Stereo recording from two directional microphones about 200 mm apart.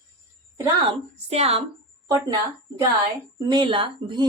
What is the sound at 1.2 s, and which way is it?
Speech, 30° right (ahead or behind).